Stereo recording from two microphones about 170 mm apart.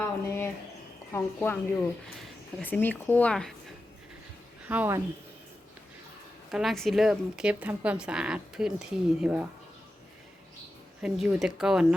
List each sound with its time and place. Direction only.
0.3 s a sound: 15° left (ahead or behind)
1.1 s speech: 10° left (ahead or behind)
4.7 s speech: 10° right (ahead or behind)
6.5 s speech: centre (ahead or behind)
11.0 s speech: 5° right (ahead or behind)